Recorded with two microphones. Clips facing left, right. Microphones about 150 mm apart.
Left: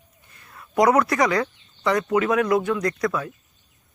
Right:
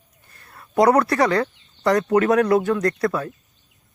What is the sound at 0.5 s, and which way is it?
Speech, 35° right (ahead or behind).